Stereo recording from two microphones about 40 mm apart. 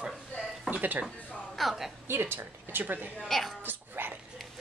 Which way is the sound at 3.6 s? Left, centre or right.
Right.